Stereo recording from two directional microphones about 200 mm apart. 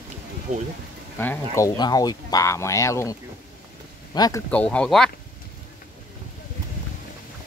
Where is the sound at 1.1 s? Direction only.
10° left (ahead or behind).